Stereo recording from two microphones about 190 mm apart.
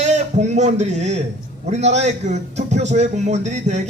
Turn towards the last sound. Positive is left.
turn(degrees=-35)  # may be behind; listen again after turning